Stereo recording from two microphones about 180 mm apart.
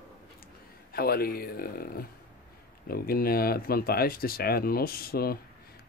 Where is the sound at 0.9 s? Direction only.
55° left (ahead or behind).